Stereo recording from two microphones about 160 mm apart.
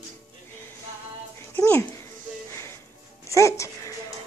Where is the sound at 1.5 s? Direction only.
15° left (ahead or behind).